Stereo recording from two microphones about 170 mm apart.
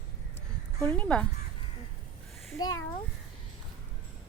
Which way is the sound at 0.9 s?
10° left (ahead or behind).